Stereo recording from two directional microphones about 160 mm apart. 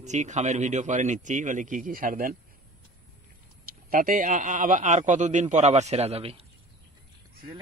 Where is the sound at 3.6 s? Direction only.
60° right (ahead or behind); by 6.4 s 40° right (ahead or behind).